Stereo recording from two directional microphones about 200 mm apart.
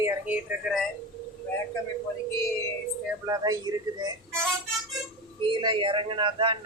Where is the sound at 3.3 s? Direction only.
15° right (ahead or behind).